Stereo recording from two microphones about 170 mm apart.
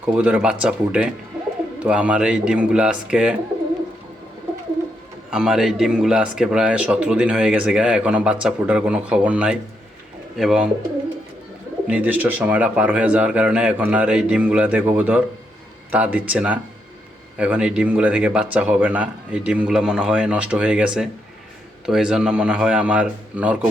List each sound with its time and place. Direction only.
0.0 s speech: 10° right (ahead or behind)
5.3 s a man's voice: 5° right (ahead or behind)
11.9 s speech: 10° right (ahead or behind)